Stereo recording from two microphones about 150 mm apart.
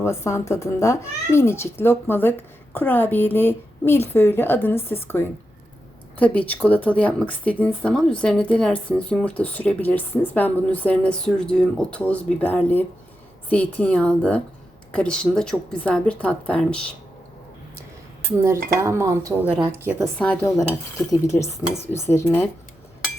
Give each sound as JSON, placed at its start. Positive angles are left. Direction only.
{"t": 0.0, "sound": "a woman's voice", "side_deg": 20}
{"t": 18.3, "sound": "dishes", "side_deg": -20}
{"t": 18.8, "sound": "speech", "side_deg": -20}
{"t": 19.8, "sound": "dishes", "side_deg": -15}
{"t": 20.1, "sound": "speech", "side_deg": 10}
{"t": 21.1, "sound": "dishes", "side_deg": 20}
{"t": 21.9, "sound": "speech", "side_deg": 15}